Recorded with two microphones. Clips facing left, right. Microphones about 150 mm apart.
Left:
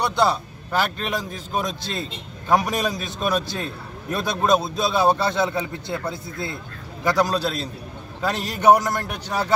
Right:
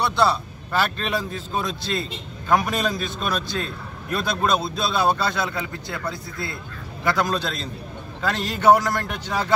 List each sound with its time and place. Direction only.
0.0 s a man's voice: 15° left (ahead or behind)
7.1 s a man's voice: 10° left (ahead or behind)